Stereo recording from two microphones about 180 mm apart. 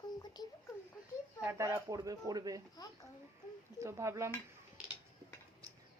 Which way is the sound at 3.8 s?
15° right (ahead or behind).